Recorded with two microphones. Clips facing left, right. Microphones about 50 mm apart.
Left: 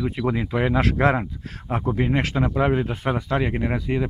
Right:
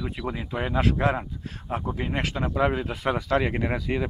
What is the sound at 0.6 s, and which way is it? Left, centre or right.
Speech, left.